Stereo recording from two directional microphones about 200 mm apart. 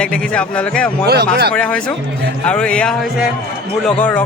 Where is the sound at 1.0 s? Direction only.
55° right (ahead or behind).